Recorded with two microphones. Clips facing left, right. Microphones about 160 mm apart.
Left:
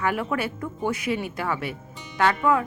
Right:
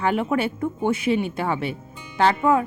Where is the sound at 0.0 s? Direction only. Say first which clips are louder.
Right 4 dB; 25° right (ahead or behind).